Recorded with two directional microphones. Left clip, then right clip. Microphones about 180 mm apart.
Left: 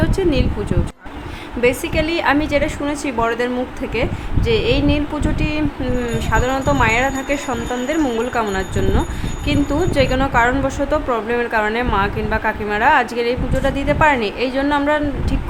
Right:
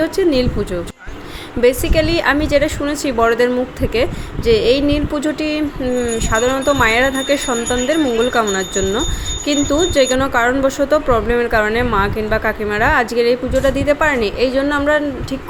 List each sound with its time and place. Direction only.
0.0 s a woman's voice: 20° right (ahead or behind)